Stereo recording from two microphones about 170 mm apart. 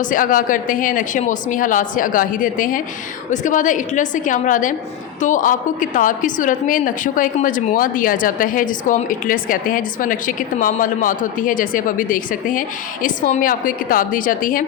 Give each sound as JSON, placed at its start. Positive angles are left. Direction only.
{"t": 0.0, "sound": "a woman's voice", "side_deg": 50}